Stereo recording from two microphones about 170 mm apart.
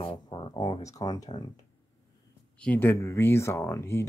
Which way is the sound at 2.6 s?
10° left (ahead or behind).